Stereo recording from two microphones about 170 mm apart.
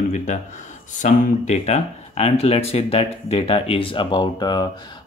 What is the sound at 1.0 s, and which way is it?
Speech, 45° left (ahead or behind).